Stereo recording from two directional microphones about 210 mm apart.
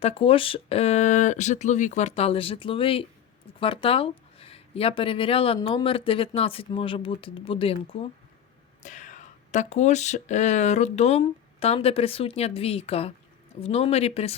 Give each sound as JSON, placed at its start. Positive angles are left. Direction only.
{"t": 0.0, "sound": "speech", "side_deg": 25}
{"t": 8.8, "sound": "speech", "side_deg": 35}